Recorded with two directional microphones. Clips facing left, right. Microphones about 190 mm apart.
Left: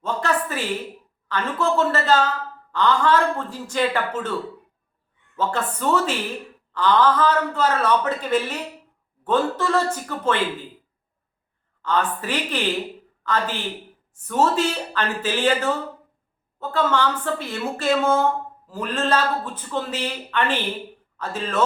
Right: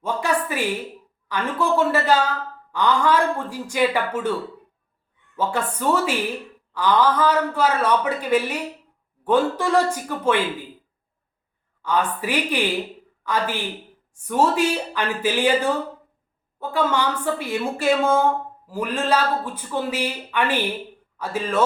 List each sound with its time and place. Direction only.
0.0 s speech: 10° right (ahead or behind)
5.4 s speech: 10° right (ahead or behind)
11.8 s speech: 10° right (ahead or behind)